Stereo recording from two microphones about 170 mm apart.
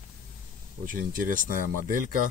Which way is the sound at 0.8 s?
55° right (ahead or behind).